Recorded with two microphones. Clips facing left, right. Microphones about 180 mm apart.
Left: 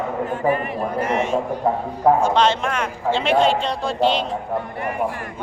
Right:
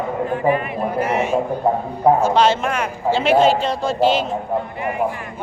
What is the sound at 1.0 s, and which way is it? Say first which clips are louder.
Speech: right 2 dB; 10° right (ahead or behind).